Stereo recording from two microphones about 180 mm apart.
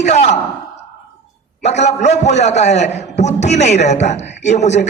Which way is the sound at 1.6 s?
40° left (ahead or behind).